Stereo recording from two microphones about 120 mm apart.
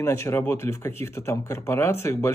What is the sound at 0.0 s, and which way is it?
Speech, 20° left (ahead or behind).